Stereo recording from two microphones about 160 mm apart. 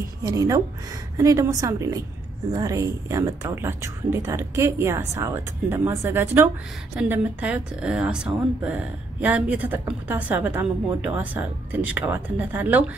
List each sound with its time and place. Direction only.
0.2 s a woman's voice: 20° right (ahead or behind)